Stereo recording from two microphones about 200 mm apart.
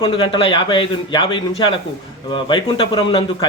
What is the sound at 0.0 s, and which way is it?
A man's voice, 25° left (ahead or behind).